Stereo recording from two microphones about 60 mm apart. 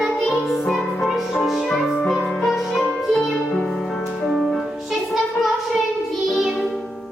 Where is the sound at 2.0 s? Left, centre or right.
Centre.